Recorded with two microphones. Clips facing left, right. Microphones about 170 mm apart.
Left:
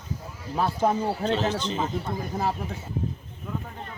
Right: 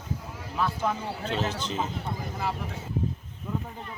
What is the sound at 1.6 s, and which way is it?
Speech, 5° right (ahead or behind).